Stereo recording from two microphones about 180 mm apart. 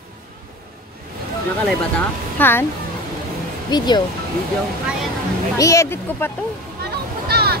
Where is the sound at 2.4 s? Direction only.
10° left (ahead or behind).